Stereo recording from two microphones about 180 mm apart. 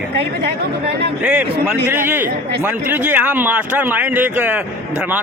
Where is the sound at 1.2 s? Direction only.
5° right (ahead or behind).